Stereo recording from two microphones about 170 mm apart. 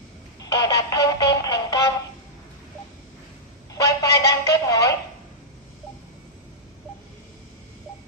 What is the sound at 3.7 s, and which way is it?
Telephone, 20° left (ahead or behind).